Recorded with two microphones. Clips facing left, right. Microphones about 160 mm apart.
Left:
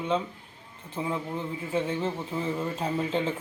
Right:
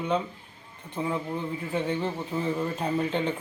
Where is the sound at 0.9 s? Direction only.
Centre (ahead or behind).